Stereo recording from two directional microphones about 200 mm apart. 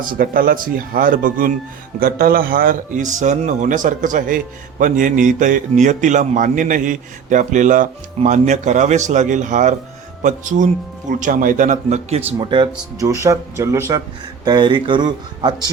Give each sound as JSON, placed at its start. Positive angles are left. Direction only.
{"t": 0.0, "sound": "a man's voice", "side_deg": -45}
{"t": 11.1, "sound": "a man's voice", "side_deg": -40}
{"t": 12.4, "sound": "speech", "side_deg": -25}